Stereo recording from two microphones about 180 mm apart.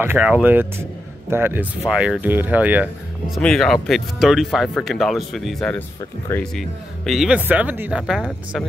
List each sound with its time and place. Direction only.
0.0 s speech: 10° right (ahead or behind)